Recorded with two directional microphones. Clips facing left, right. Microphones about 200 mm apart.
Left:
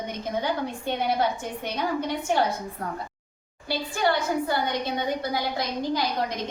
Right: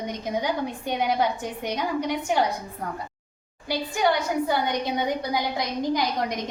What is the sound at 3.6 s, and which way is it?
A woman's voice, 15° right (ahead or behind).